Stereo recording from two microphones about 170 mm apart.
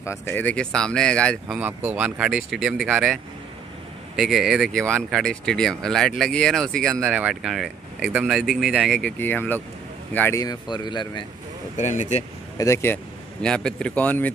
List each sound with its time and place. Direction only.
0.0 s speech: 15° left (ahead or behind)
1.5 s speech: 10° right (ahead or behind)
4.2 s speech: centre (ahead or behind)
7.0 s speech: 10° right (ahead or behind); by 10.4 s 10° left (ahead or behind)
10.4 s speech: 25° left (ahead or behind)
11.7 s speech: 45° left (ahead or behind)
12.5 s speech: 15° left (ahead or behind)